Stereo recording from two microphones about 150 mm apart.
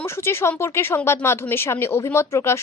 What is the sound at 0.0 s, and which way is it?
A woman's voice, 15° left (ahead or behind).